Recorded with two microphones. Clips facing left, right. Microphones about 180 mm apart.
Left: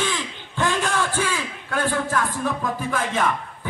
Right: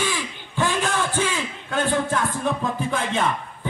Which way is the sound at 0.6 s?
15° right (ahead or behind).